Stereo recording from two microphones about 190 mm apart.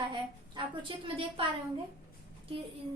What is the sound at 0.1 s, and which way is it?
A woman's voice, 25° right (ahead or behind).